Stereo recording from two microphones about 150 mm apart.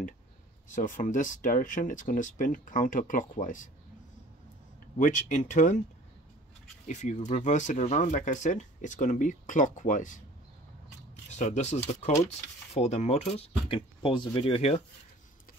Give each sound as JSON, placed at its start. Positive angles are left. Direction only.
{"t": 0.7, "sound": "speech", "side_deg": 60}
{"t": 4.9, "sound": "speech", "side_deg": 60}
{"t": 6.9, "sound": "speech", "side_deg": 50}
{"t": 11.3, "sound": "speech", "side_deg": 50}